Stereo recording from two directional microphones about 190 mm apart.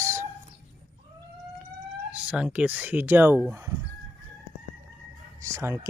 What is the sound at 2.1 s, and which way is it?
Speech, 5° right (ahead or behind).